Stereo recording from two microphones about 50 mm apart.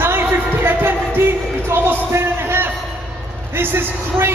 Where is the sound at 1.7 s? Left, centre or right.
Right.